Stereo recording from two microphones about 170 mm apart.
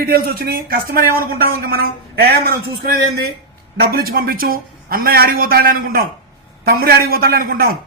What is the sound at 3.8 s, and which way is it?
A man's voice, 60° right (ahead or behind).